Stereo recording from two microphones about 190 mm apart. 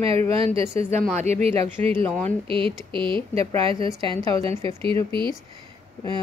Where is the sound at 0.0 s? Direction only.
30° right (ahead or behind).